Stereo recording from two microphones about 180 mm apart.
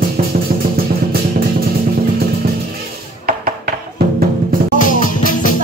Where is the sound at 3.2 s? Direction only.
55° right (ahead or behind).